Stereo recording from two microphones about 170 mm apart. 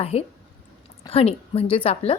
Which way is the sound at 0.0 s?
35° left (ahead or behind).